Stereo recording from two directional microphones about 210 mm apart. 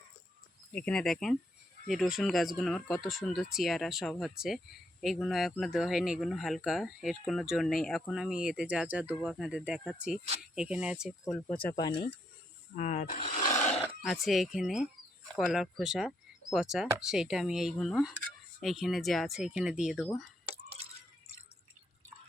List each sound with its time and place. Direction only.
0.7 s speech: 5° left (ahead or behind)
11.8 s speech: 20° left (ahead or behind)
12.7 s speech: 35° left (ahead or behind)
13.8 s speech: centre (ahead or behind)